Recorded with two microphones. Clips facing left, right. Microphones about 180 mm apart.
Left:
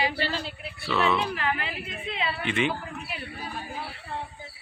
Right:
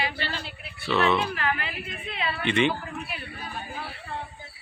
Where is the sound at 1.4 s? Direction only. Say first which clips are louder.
Even; 25° left (ahead or behind).